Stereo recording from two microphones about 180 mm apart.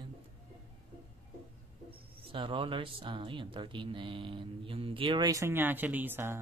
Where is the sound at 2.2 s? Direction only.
30° right (ahead or behind).